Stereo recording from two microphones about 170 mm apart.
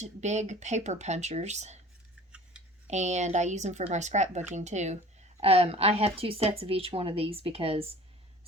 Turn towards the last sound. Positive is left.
turn(degrees=-35)  # may be behind; listen again after turning